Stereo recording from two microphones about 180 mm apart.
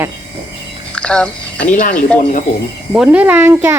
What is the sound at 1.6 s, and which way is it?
Speech, 45° left (ahead or behind).